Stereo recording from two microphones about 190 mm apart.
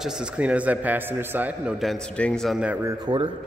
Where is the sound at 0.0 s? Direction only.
5° right (ahead or behind).